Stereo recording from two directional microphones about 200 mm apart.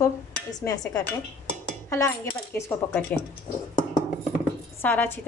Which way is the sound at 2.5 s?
15° left (ahead or behind).